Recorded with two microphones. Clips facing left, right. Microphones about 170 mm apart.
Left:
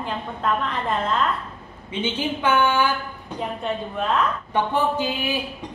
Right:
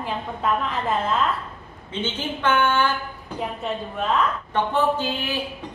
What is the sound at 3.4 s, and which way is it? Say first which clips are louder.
Speech: left 1 dB; centre (ahead or behind).